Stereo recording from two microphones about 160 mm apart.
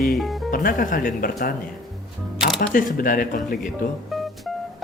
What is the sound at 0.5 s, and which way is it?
Speech, 60° left (ahead or behind).